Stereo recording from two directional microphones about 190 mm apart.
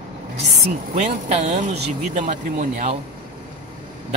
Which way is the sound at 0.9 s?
40° right (ahead or behind).